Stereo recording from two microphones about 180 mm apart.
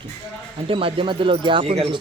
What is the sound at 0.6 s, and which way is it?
Speech, 30° right (ahead or behind).